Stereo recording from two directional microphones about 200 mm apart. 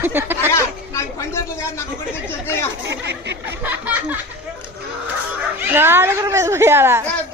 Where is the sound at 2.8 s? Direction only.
60° right (ahead or behind).